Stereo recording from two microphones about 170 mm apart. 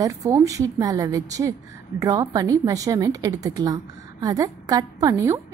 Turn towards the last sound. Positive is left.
turn(degrees=-20)  # may be behind; listen again after turning